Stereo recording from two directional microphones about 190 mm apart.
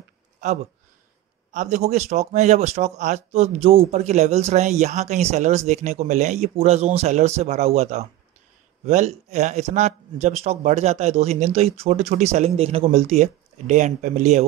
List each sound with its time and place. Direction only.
1.5 s speech: 40° right (ahead or behind)